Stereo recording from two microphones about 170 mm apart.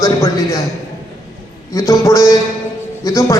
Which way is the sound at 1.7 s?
20° left (ahead or behind).